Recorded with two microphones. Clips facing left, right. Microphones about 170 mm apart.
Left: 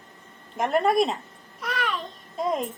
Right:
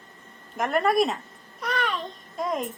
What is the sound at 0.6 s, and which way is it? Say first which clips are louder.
Speech: left 2 dB; 30° left (ahead or behind).